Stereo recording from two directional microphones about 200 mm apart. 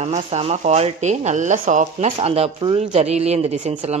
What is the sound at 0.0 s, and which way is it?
Speech, 35° right (ahead or behind).